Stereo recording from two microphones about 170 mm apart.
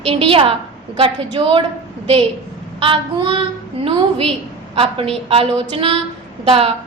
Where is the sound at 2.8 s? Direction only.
30° right (ahead or behind).